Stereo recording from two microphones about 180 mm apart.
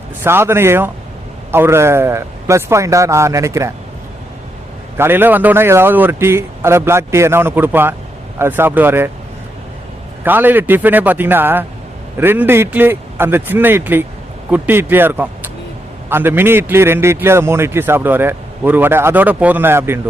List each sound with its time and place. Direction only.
0.3 s a man's voice: 15° right (ahead or behind)
4.9 s a man's voice: 10° right (ahead or behind)
10.2 s a man's voice: 10° right (ahead or behind)